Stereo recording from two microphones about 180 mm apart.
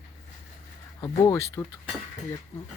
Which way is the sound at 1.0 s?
20° left (ahead or behind).